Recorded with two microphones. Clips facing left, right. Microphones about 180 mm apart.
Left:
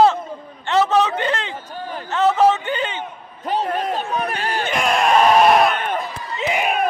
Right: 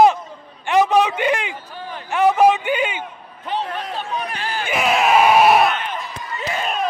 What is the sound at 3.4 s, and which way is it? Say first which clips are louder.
Speech: left 4 dB; 45° left (ahead or behind).